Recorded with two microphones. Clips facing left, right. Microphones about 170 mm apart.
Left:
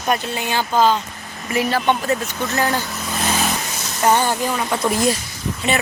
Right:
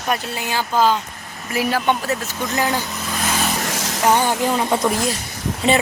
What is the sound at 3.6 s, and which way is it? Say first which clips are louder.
Vehicle: right 5 dB; 90° right.